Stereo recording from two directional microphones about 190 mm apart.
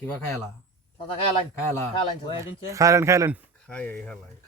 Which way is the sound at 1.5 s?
15° left (ahead or behind).